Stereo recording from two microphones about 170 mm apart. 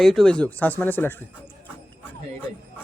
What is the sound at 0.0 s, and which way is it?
Speech, centre (ahead or behind).